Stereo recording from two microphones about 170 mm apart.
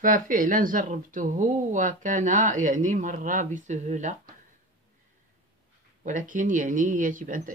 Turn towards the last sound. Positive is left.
turn(degrees=-50)  # may be behind; listen again after turning